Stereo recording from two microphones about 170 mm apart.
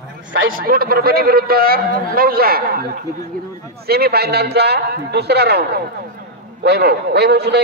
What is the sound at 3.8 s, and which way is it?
A man's voice, 65° right (ahead or behind).